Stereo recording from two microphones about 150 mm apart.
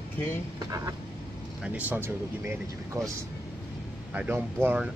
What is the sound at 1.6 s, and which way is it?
Speech, 10° right (ahead or behind).